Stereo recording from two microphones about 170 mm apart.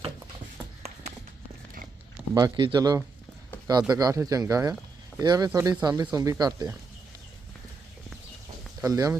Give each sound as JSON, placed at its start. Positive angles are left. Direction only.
{"t": 2.3, "sound": "speech", "side_deg": -25}
{"t": 5.5, "sound": "speech", "side_deg": -10}
{"t": 8.8, "sound": "speech", "side_deg": -20}